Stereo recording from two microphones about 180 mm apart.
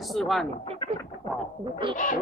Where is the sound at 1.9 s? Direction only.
45° left (ahead or behind).